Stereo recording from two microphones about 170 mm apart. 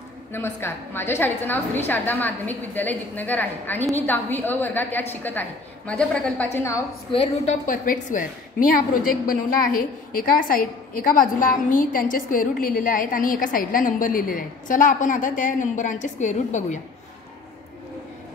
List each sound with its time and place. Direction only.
0.3 s a woman's voice: 15° left (ahead or behind)
7.6 s a woman's voice: 50° left (ahead or behind)